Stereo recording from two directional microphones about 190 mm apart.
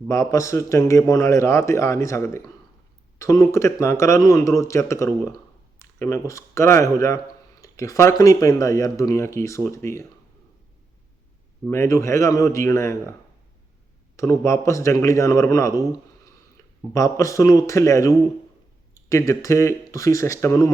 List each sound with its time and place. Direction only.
0.1 s a man's voice: 15° left (ahead or behind)
7.6 s a sound: 15° left (ahead or behind)
8.2 s a man's voice: 20° left (ahead or behind)
11.7 s a man's voice: 15° left (ahead or behind)
14.2 s a man's voice: 15° left (ahead or behind)
16.9 s a man's voice: 15° left (ahead or behind)